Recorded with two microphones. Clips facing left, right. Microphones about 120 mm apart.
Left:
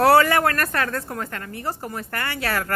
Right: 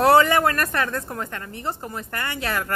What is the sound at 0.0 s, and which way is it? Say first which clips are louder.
A woman's voice: even; 20° right (ahead or behind).